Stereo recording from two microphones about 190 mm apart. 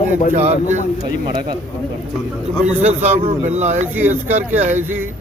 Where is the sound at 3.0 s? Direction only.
35° right (ahead or behind).